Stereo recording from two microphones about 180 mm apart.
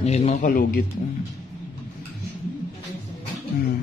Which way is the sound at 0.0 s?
35° left (ahead or behind).